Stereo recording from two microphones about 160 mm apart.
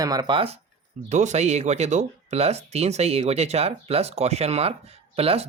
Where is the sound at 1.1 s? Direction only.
45° right (ahead or behind).